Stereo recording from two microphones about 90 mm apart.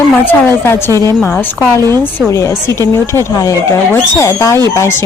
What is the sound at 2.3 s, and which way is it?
A woman's voice, 35° left (ahead or behind).